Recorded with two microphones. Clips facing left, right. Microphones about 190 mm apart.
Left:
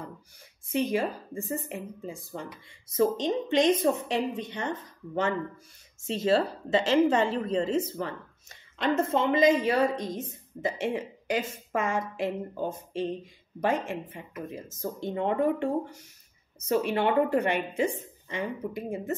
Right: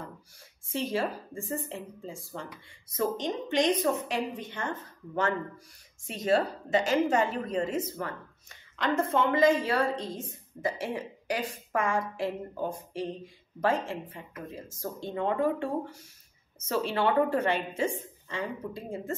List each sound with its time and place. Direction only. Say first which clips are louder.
0.7 s a woman's voice: left 3 dB; 20° left (ahead or behind)